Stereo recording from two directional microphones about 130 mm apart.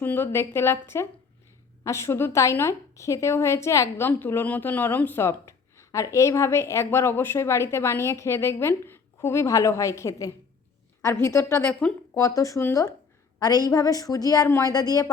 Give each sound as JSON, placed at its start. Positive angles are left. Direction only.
{"t": 0.0, "sound": "a woman's voice", "side_deg": 15}
{"t": 1.8, "sound": "a woman's voice", "side_deg": 20}
{"t": 11.7, "sound": "speech", "side_deg": 5}
{"t": 12.2, "sound": "a woman's voice", "side_deg": 25}